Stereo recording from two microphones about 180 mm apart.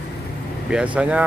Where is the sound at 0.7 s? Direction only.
5° right (ahead or behind).